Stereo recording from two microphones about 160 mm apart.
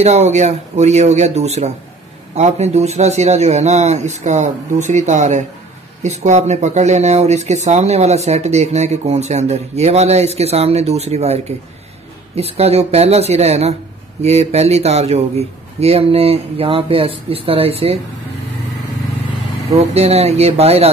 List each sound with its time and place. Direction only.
0.0 s a man's voice: 45° right (ahead or behind)
19.9 s a man's voice: 40° right (ahead or behind)